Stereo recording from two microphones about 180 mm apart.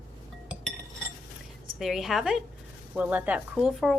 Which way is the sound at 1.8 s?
Centre (ahead or behind).